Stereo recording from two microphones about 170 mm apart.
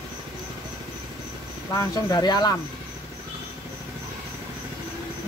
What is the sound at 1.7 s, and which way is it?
Speech, 20° left (ahead or behind).